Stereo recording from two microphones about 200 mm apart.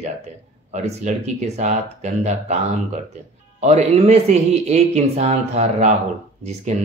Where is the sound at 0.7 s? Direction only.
35° right (ahead or behind).